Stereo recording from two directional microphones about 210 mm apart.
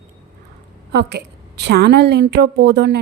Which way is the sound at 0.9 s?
50° right (ahead or behind).